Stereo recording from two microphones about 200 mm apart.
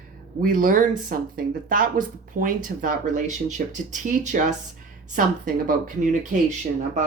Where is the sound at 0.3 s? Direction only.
40° right (ahead or behind).